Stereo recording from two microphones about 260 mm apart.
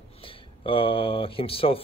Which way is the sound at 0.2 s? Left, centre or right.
Centre.